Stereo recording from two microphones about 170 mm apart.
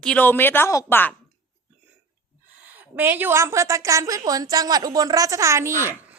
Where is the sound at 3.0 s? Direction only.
10° right (ahead or behind).